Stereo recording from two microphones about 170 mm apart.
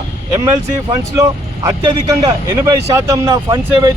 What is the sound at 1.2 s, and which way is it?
Speech, 20° right (ahead or behind).